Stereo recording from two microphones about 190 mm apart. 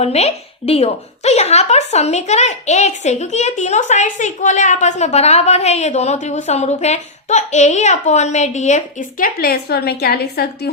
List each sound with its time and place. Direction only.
0.0 s a woman's voice: 35° left (ahead or behind); by 10.7 s 55° left (ahead or behind)